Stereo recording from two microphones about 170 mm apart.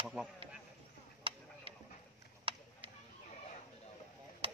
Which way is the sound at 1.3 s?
30° right (ahead or behind).